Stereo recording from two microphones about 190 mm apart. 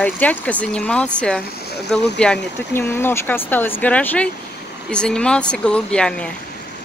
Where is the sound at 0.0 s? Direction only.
5° left (ahead or behind).